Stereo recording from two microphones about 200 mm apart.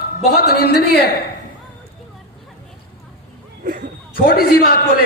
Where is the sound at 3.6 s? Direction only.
45° right (ahead or behind).